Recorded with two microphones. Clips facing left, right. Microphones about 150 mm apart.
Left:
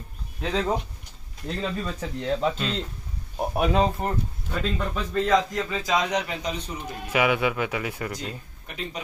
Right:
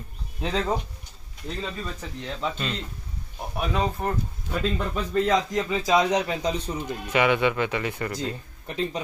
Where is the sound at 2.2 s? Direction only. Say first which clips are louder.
Left 10 dB; 50° left (ahead or behind).